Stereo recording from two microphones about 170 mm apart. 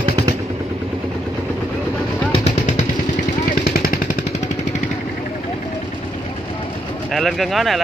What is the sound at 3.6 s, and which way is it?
Vehicle, 65° left (ahead or behind).